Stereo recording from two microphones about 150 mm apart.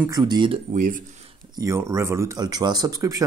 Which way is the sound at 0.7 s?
60° right (ahead or behind).